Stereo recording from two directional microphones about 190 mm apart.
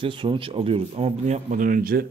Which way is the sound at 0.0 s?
25° right (ahead or behind).